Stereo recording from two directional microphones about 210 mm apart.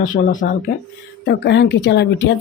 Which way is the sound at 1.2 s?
55° left (ahead or behind).